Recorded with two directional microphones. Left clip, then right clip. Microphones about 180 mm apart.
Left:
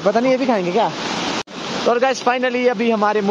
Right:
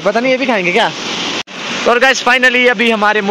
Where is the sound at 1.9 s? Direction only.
Centre (ahead or behind).